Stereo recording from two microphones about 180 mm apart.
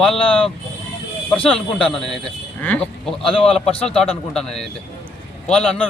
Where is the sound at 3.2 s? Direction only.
30° left (ahead or behind).